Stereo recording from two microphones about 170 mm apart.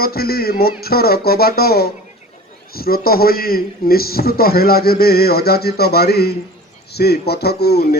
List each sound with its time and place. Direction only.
0.0 s a man's voice: 65° left (ahead or behind)